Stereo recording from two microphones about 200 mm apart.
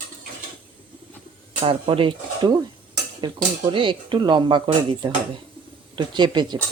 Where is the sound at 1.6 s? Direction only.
25° right (ahead or behind).